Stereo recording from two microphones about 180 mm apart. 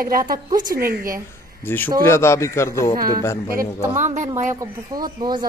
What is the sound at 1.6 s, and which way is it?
A man's voice, 10° left (ahead or behind).